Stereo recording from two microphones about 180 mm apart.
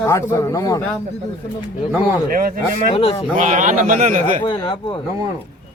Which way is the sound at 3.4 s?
45° right (ahead or behind).